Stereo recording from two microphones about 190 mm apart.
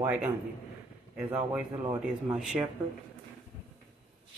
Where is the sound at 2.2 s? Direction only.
5° right (ahead or behind).